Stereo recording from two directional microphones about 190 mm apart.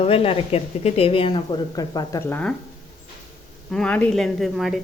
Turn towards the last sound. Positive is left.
turn(degrees=0)  # may be behind; listen again after turning